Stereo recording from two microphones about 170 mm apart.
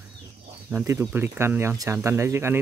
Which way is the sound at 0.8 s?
15° right (ahead or behind).